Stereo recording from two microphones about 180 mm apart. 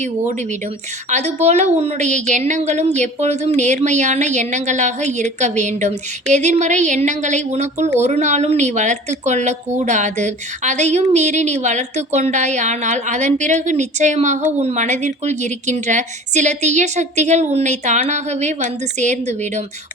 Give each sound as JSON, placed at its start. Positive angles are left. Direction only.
{"t": 0.0, "sound": "a woman's voice", "side_deg": -40}